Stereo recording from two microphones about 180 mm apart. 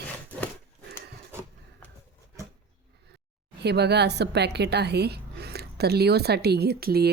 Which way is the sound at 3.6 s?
65° right (ahead or behind).